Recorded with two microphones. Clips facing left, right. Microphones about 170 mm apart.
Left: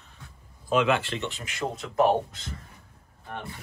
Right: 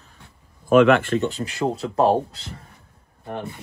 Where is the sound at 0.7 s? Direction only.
55° right (ahead or behind).